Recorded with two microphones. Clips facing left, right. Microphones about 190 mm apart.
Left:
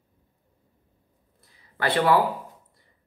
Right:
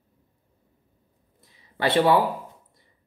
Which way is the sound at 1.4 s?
20° right (ahead or behind).